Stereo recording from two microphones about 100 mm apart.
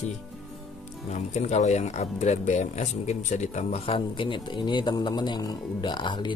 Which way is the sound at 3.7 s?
80° left.